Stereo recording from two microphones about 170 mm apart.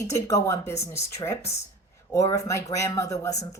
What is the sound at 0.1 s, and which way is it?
Speech, 20° left (ahead or behind).